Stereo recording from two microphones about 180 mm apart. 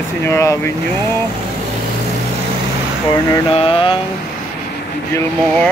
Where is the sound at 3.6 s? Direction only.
30° left (ahead or behind).